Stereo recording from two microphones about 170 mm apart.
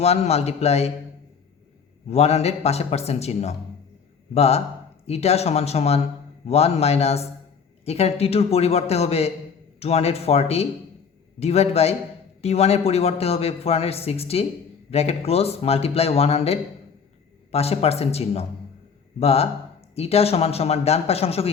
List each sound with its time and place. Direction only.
0.0 s a man's voice: 40° left (ahead or behind)
2.0 s a man's voice: 40° left (ahead or behind)